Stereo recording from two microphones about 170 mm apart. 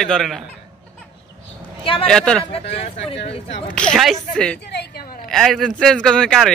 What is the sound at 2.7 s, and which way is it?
Speech, 35° left (ahead or behind).